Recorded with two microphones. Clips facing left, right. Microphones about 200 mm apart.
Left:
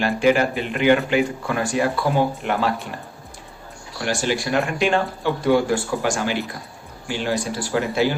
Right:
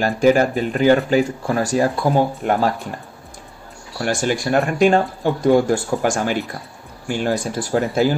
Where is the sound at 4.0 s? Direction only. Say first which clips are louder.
Right 3 dB; 45° right (ahead or behind).